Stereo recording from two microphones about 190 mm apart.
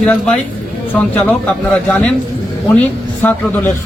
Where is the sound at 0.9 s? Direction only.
10° left (ahead or behind).